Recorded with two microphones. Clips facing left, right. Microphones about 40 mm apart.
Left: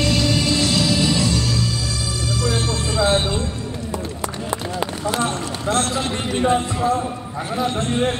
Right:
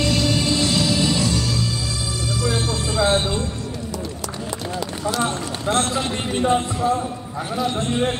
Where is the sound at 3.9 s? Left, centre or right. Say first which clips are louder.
Left 2 dB; left.